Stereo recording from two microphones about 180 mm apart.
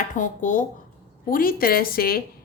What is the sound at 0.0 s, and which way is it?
A woman's voice, 45° left (ahead or behind).